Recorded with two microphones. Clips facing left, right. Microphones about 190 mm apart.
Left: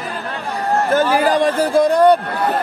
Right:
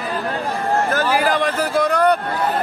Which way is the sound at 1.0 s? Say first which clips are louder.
Left 3 dB; 20° left (ahead or behind).